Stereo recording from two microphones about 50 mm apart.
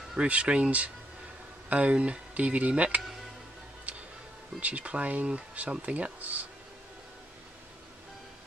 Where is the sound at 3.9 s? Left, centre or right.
Right.